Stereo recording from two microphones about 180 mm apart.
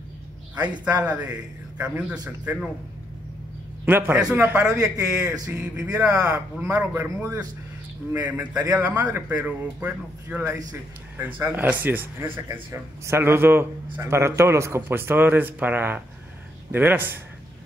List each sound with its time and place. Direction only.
0.6 s a man's voice: 10° right (ahead or behind)
3.8 s a man's voice: 10° right (ahead or behind)
9.4 s a man's voice: 10° right (ahead or behind)